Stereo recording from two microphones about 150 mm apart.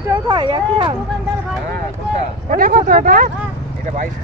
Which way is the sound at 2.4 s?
70° right (ahead or behind).